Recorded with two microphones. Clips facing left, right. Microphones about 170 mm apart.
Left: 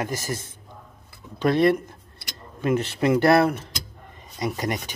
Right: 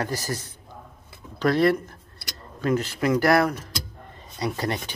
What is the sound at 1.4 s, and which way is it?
Speech, 20° left (ahead or behind).